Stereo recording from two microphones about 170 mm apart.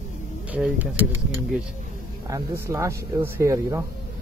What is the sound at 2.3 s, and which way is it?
Speech, 15° right (ahead or behind).